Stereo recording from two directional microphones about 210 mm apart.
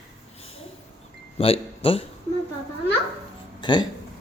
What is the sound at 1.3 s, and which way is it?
Speech, 25° left (ahead or behind).